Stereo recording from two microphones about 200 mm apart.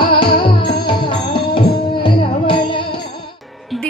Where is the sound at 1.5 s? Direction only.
25° left (ahead or behind).